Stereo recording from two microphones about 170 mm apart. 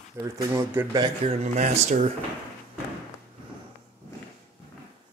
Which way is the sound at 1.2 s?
35° right (ahead or behind).